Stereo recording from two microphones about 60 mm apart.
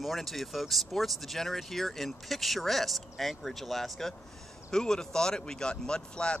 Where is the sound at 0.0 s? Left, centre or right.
Centre.